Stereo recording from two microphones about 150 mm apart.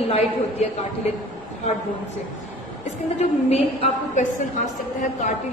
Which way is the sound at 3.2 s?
45° left (ahead or behind).